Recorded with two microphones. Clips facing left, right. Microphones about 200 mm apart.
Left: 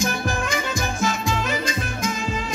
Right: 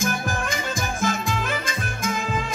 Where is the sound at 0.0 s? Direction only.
50° right (ahead or behind).